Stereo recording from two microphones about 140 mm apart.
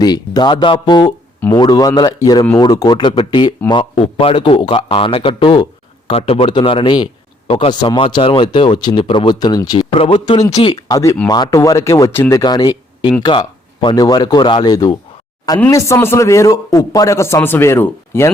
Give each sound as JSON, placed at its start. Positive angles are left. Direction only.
{"t": 0.0, "sound": "a man's voice", "side_deg": 30}
{"t": 12.4, "sound": "a man's voice", "side_deg": 30}